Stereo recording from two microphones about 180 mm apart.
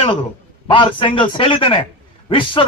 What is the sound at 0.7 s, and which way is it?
A man's voice, 30° left (ahead or behind).